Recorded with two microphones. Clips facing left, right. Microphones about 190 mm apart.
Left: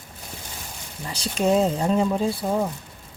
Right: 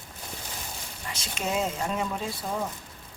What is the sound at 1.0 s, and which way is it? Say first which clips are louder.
Speech: left 10 dB; 35° left (ahead or behind).